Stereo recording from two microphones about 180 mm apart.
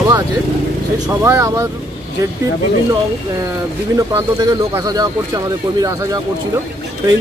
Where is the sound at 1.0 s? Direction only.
15° right (ahead or behind).